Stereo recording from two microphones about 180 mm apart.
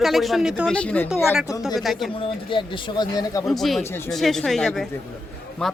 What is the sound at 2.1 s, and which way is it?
Speech, 30° left (ahead or behind).